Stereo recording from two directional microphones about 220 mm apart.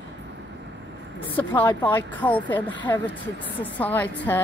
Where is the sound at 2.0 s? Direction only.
10° left (ahead or behind).